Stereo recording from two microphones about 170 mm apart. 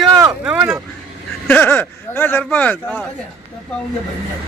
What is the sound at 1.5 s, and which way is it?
Speech, 10° left (ahead or behind).